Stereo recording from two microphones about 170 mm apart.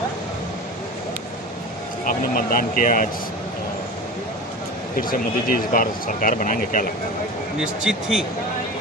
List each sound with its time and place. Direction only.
2.0 s speech: 55° left (ahead or behind)
5.0 s speech: 55° left (ahead or behind)
7.6 s speech: 5° right (ahead or behind)